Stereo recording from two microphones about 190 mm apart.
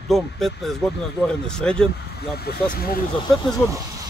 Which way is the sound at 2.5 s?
50° left (ahead or behind).